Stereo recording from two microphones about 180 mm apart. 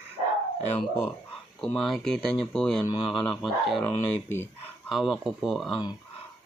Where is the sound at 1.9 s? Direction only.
5° left (ahead or behind).